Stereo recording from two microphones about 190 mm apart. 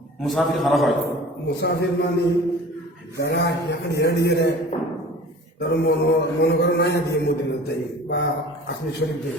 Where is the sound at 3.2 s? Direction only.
60° left (ahead or behind).